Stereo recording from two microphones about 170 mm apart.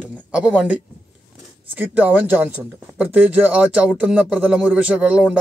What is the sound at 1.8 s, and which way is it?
Speech, 10° right (ahead or behind).